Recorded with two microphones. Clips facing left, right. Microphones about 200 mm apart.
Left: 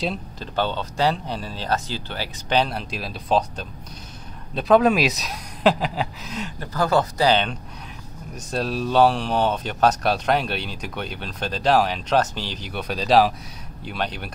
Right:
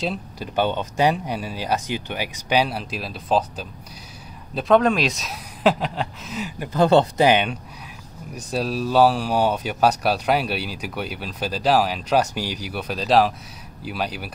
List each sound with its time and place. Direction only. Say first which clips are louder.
0.4 s speech: right 3 dB; 15° right (ahead or behind)
6.7 s speech: right 5 dB; 25° right (ahead or behind); by 14.3 s 5° right (ahead or behind)